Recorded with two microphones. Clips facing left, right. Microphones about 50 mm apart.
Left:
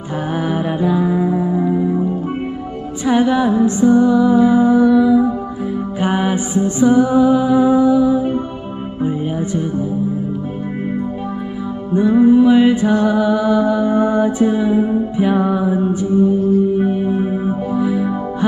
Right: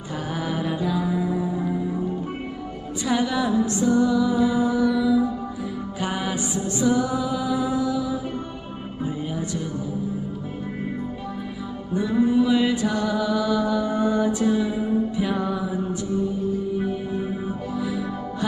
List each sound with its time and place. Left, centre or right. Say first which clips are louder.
0.4 s music: left 7 dB; left
3.1 s music: left 8 dB; left
12.0 s music: left 9 dB; left